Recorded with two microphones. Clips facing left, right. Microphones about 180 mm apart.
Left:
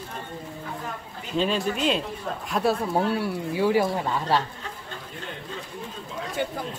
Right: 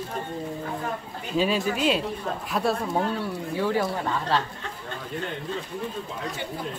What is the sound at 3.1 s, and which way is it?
Speech, 10° left (ahead or behind).